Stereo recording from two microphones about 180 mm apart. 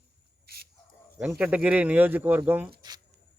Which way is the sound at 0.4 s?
60° right (ahead or behind).